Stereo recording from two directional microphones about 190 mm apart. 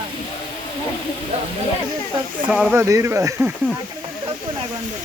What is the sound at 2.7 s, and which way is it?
Speech, 15° right (ahead or behind).